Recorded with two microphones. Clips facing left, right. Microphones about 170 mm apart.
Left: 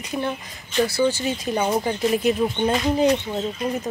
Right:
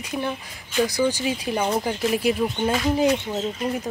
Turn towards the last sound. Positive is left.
turn(degrees=-5)  # may be behind; listen again after turning